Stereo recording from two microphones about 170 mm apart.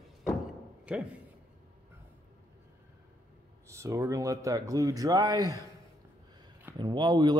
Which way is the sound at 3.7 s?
15° right (ahead or behind).